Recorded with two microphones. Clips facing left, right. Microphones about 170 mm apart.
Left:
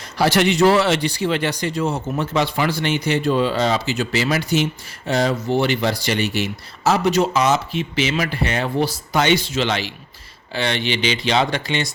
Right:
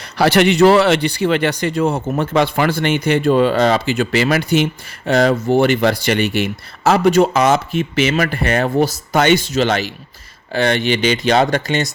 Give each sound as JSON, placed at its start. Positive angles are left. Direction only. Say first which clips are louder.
{"t": 0.0, "sound": "speech", "louder": "right 4 dB", "side_deg": -65}